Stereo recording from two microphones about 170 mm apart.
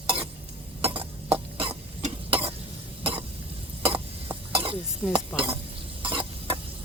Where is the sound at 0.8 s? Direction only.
30° right (ahead or behind).